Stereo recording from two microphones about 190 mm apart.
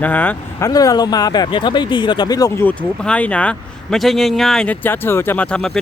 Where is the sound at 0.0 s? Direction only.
10° left (ahead or behind).